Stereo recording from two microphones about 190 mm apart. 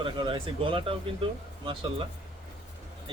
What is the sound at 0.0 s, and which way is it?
Speech, 25° right (ahead or behind).